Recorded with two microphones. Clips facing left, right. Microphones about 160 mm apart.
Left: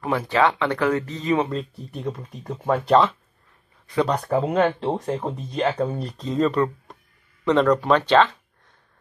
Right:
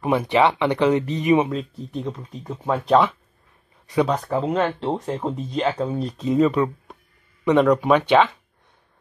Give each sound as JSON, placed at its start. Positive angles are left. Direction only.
{"t": 0.0, "sound": "speech", "side_deg": -20}
{"t": 1.9, "sound": "speech", "side_deg": 5}
{"t": 5.2, "sound": "speech", "side_deg": -5}